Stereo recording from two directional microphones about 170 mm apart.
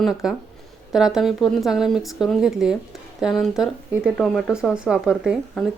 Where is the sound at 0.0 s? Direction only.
5° right (ahead or behind).